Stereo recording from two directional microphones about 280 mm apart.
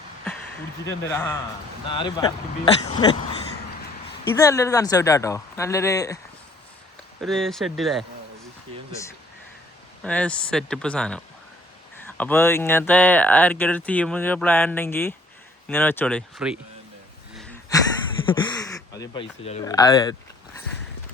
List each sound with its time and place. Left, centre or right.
1.0 s speech: centre
4.4 s speech: centre
7.2 s speech: centre
10.0 s speech: centre
17.7 s a sound: centre
18.3 s speech: centre